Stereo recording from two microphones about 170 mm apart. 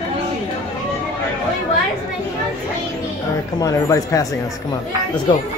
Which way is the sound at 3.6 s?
20° left (ahead or behind).